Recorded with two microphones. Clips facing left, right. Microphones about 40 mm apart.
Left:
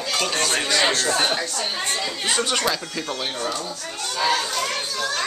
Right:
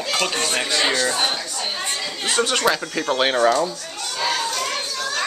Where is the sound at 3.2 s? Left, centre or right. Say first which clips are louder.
Right 13 dB; right.